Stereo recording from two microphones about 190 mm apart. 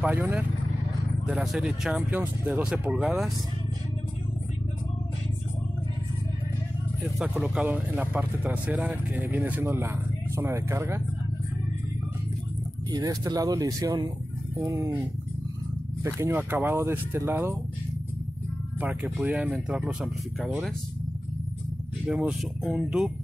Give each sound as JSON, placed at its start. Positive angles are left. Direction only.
{"t": 0.0, "sound": "speech", "side_deg": -5}
{"t": 7.2, "sound": "speech", "side_deg": -5}
{"t": 12.9, "sound": "speech", "side_deg": -20}
{"t": 16.0, "sound": "speech", "side_deg": -15}
{"t": 18.8, "sound": "speech", "side_deg": -5}
{"t": 22.0, "sound": "speech", "side_deg": 0}